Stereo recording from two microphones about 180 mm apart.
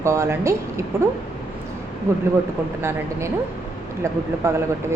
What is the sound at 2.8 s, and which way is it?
Speech, 15° right (ahead or behind).